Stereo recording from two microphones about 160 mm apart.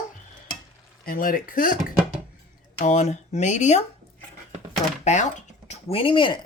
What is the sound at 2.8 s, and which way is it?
Speech, 45° left (ahead or behind).